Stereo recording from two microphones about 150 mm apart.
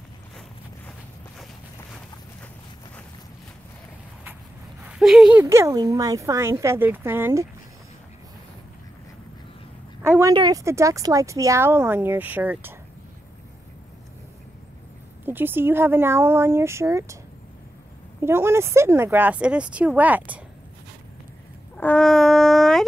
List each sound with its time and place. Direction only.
4.8 s speech: centre (ahead or behind)
5.4 s speech: 20° right (ahead or behind)
10.0 s a sound: 15° right (ahead or behind)
10.3 s speech: 25° right (ahead or behind)
15.2 s speech: 15° right (ahead or behind)
18.2 s speech: 15° right (ahead or behind)
21.7 s speech: 10° left (ahead or behind)